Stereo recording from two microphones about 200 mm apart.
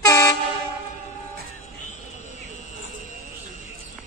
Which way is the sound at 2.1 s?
35° left (ahead or behind).